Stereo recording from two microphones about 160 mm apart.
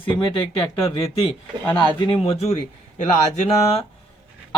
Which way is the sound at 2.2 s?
40° left (ahead or behind).